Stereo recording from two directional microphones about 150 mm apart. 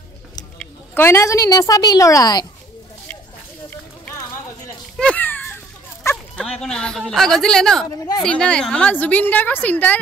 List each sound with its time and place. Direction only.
0.6 s a woman's voice: 15° left (ahead or behind)
4.9 s children playing: 10° left (ahead or behind)
6.0 s dog: 20° left (ahead or behind)
6.4 s a woman's voice: 5° left (ahead or behind)